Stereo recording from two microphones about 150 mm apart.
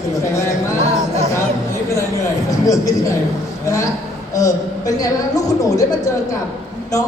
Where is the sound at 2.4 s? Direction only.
20° left (ahead or behind).